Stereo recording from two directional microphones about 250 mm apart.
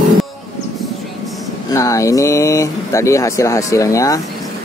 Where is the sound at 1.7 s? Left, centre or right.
Centre.